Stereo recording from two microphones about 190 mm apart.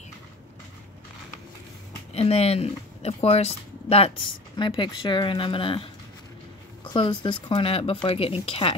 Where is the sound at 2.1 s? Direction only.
35° left (ahead or behind).